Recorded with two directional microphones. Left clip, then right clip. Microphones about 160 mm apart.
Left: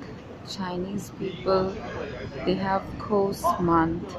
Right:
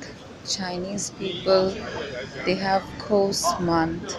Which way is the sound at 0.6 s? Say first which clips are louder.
Left 2 dB; 10° right (ahead or behind).